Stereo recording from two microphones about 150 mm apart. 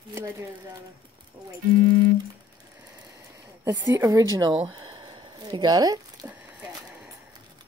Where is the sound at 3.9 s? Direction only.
20° right (ahead or behind).